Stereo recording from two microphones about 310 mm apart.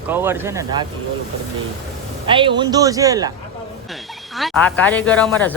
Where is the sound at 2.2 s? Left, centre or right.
Centre.